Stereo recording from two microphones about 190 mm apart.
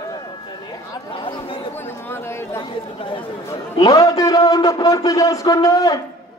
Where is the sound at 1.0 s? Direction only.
25° left (ahead or behind).